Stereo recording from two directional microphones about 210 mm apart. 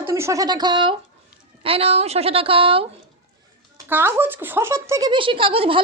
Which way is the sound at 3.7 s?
10° right (ahead or behind).